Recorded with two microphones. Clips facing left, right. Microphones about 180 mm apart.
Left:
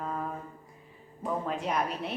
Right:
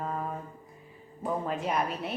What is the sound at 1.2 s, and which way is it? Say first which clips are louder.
Speech: right 1 dB; centre (ahead or behind).